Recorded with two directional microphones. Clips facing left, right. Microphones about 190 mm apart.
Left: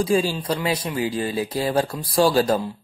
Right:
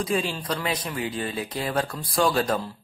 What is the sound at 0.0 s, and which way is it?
A woman's voice, 30° left (ahead or behind).